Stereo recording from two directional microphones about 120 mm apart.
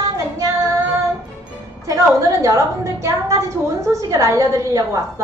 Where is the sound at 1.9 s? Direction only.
25° right (ahead or behind).